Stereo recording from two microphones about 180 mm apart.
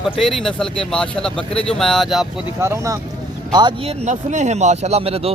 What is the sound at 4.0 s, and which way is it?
Speech, 40° right (ahead or behind).